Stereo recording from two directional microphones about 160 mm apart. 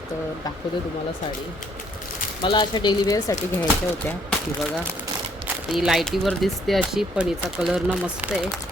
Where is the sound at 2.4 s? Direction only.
30° left (ahead or behind).